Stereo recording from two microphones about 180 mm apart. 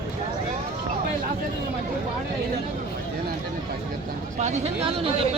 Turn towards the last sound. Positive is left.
turn(degrees=-35)  # may be behind; listen again after turning